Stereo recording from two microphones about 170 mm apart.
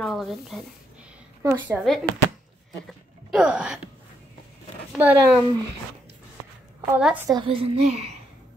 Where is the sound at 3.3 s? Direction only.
5° right (ahead or behind).